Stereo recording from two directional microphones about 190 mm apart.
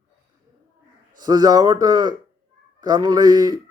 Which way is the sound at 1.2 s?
20° right (ahead or behind).